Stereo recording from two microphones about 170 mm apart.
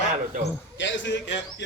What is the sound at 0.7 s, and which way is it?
Speech, 90° left.